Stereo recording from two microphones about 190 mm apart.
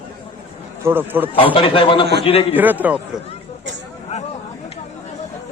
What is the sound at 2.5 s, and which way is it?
Speech, 10° right (ahead or behind).